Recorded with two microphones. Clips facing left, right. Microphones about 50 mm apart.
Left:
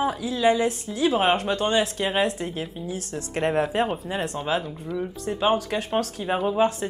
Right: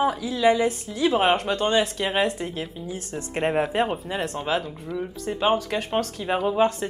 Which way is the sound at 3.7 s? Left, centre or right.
Right.